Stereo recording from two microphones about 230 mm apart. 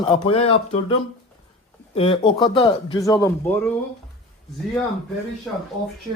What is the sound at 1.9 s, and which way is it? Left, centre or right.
Speech, left.